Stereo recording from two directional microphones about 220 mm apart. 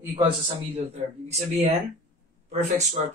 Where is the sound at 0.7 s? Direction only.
30° right (ahead or behind).